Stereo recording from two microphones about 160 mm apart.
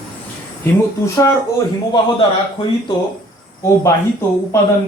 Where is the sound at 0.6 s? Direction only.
15° left (ahead or behind).